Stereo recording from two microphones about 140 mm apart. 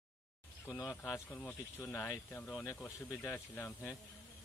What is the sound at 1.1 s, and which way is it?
A man's voice, 10° left (ahead or behind).